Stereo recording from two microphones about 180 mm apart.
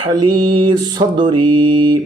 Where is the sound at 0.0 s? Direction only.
25° right (ahead or behind).